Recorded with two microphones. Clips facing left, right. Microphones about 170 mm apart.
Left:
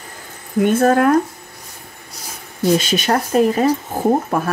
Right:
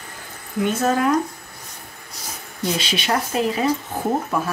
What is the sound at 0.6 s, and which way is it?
Speech, 55° left (ahead or behind).